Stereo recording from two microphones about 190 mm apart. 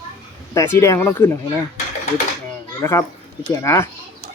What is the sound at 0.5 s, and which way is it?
Speech, 15° left (ahead or behind).